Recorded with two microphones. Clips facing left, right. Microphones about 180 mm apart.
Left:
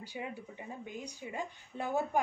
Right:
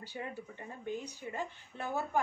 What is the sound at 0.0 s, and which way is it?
A woman's voice, 15° left (ahead or behind).